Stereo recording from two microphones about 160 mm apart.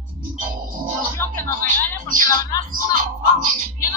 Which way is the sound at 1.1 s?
15° left (ahead or behind).